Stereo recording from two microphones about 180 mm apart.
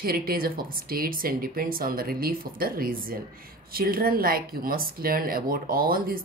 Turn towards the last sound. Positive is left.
turn(degrees=-55)  # may be behind; listen again after turning